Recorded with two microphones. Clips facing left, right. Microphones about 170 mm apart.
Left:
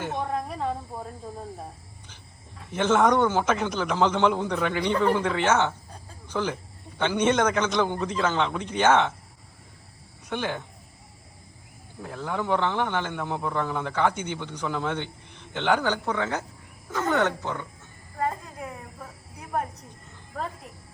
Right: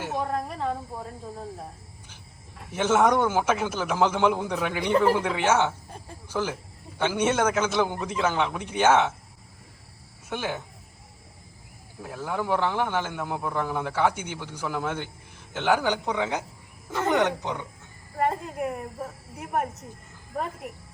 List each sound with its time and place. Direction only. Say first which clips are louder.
0.0 s snake: even; 5° right (ahead or behind)
2.6 s speech: even; 10° right (ahead or behind)
10.2 s speech: left 1 dB; 5° right (ahead or behind)
11.9 s speech: even; 5° right (ahead or behind)